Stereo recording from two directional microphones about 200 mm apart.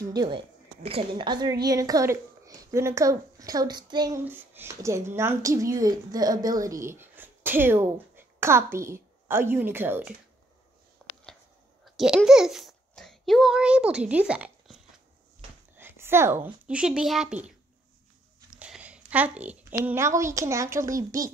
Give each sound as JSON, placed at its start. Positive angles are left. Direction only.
{"t": 0.0, "sound": "a woman's voice", "side_deg": -20}
{"t": 4.2, "sound": "a woman's voice", "side_deg": -10}
{"t": 11.0, "sound": "a sound", "side_deg": 5}
{"t": 11.8, "sound": "a child's voice", "side_deg": 0}
{"t": 15.8, "sound": "a woman's voice", "side_deg": -10}
{"t": 18.5, "sound": "a sound", "side_deg": -5}
{"t": 19.8, "sound": "a woman's voice", "side_deg": -15}